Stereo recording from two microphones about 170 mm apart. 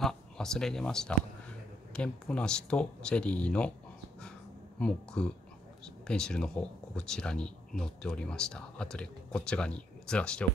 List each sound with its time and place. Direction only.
0.0 s a sound: 5° left (ahead or behind)
2.0 s speech: 5° left (ahead or behind)
4.7 s speech: 5° left (ahead or behind)